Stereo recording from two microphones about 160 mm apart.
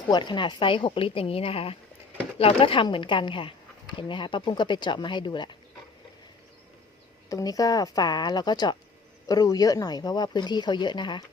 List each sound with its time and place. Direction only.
0.1 s speech: 30° left (ahead or behind)
7.3 s speech: 20° left (ahead or behind)